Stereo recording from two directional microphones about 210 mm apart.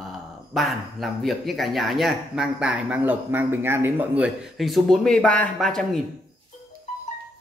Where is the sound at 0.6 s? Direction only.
Centre (ahead or behind).